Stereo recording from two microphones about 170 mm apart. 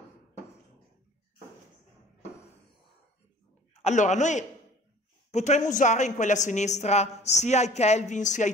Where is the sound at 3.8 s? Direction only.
45° left (ahead or behind).